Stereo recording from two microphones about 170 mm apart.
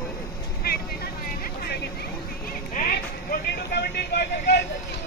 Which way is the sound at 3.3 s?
70° left (ahead or behind).